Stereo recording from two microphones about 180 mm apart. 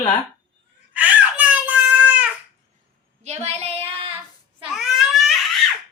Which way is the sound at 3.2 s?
35° right (ahead or behind).